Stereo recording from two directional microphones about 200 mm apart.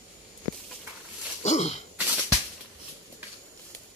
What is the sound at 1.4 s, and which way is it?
Cough, 35° left (ahead or behind).